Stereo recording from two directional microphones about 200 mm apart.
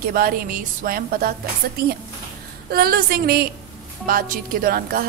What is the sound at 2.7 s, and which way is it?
A woman's voice, 50° right (ahead or behind).